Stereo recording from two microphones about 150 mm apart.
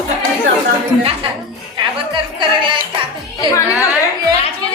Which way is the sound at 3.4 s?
20° left (ahead or behind).